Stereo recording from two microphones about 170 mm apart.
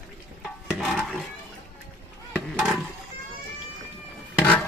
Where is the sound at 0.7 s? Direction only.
5° right (ahead or behind).